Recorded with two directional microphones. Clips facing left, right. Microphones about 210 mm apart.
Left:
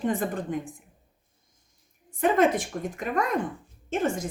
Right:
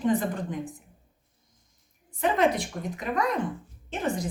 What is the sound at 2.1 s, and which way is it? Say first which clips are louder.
Speech: left 2 dB; 50° left (ahead or behind).